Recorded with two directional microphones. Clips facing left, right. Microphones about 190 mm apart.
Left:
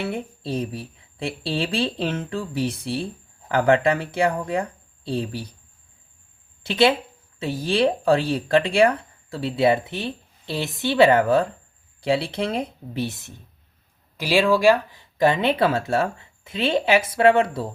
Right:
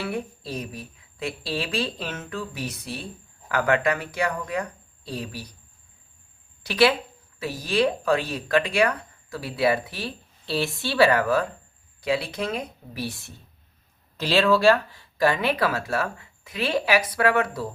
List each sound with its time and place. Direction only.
0.0 s speech: 25° left (ahead or behind)
6.6 s speech: 25° left (ahead or behind)